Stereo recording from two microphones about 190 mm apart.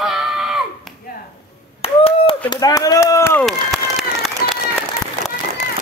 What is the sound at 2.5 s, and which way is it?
Chop, 20° left (ahead or behind).